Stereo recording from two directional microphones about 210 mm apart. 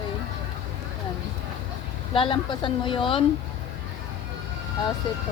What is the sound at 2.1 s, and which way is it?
Speech, 25° left (ahead or behind).